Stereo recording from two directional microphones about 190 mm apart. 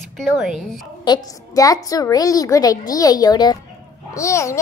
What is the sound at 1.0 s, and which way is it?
A woman's voice, 20° left (ahead or behind).